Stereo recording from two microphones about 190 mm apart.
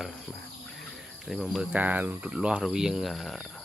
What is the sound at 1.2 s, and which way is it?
Speech, centre (ahead or behind).